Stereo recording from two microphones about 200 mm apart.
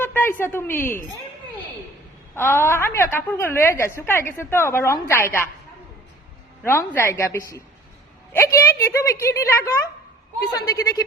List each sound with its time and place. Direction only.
0.0 s a woman's voice: 10° left (ahead or behind)
2.3 s a woman's voice: 10° left (ahead or behind)
6.6 s a woman's voice: 10° left (ahead or behind)